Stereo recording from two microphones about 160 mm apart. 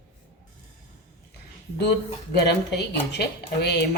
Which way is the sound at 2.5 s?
90° left.